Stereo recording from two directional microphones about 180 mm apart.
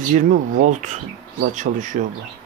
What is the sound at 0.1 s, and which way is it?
Speech, 45° right (ahead or behind).